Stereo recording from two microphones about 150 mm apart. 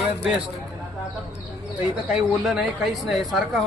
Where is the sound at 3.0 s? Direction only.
Centre (ahead or behind).